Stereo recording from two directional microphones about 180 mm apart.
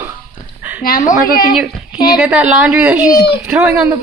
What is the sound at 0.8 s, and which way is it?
Speech, 50° left (ahead or behind).